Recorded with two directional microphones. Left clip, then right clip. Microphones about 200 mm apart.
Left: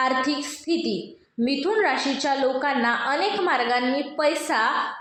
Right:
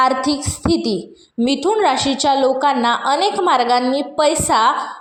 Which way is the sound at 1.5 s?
25° right (ahead or behind).